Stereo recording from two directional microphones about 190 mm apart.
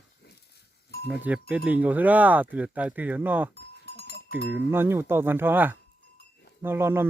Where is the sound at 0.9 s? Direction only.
55° left (ahead or behind).